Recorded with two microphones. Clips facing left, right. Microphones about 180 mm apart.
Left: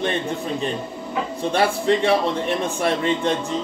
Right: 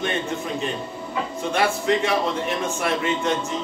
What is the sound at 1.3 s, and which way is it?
A man's voice, 30° left (ahead or behind).